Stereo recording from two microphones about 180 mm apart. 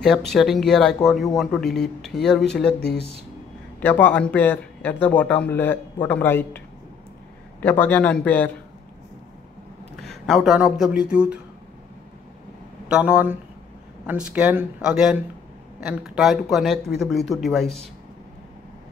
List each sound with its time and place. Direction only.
0.0 s speech: centre (ahead or behind)
2.8 s speech: 65° left (ahead or behind)
3.8 s a man's voice: 10° left (ahead or behind)
7.6 s a man's voice: 10° left (ahead or behind)
9.9 s speech: centre (ahead or behind)
12.8 s speech: 5° right (ahead or behind)